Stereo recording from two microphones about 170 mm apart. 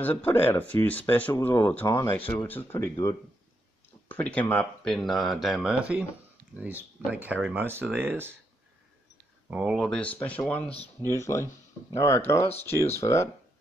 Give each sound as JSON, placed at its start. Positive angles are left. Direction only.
{"t": 0.0, "sound": "speech", "side_deg": 10}
{"t": 7.1, "sound": "speech", "side_deg": -10}
{"t": 9.5, "sound": "speech", "side_deg": -5}